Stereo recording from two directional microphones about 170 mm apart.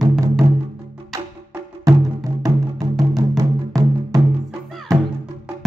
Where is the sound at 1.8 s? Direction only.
20° right (ahead or behind).